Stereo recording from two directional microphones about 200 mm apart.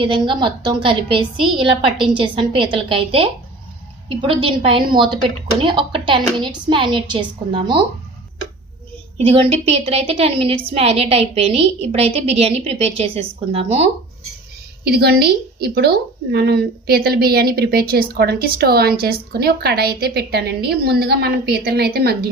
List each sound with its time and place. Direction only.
0.0 s a woman's voice: 25° right (ahead or behind)
9.3 s a woman's voice: 30° right (ahead or behind)
14.8 s a woman's voice: 50° right (ahead or behind)